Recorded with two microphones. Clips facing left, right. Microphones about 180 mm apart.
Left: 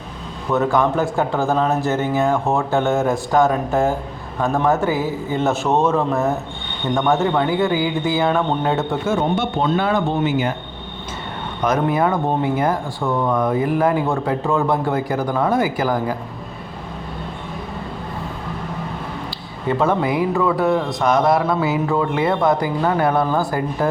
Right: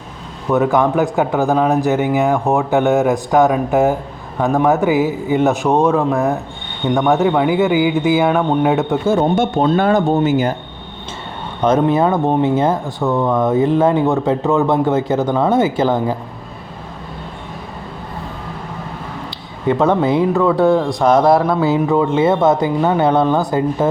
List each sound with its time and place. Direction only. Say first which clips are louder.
0.5 s a man's voice: right 3 dB; 15° right (ahead or behind)
9.0 s speech: right 5 dB; 45° right (ahead or behind)
11.6 s speech: right 5 dB; 25° right (ahead or behind)
19.6 s speech: right 4 dB; 20° right (ahead or behind)
20.6 s speech: right 5 dB; centre (ahead or behind)
21.8 s speech: right 5 dB; 20° right (ahead or behind)